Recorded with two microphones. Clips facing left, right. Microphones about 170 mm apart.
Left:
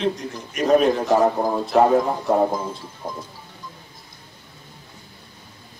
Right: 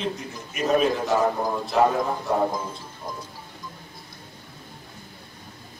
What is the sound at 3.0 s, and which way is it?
Music, 45° left (ahead or behind).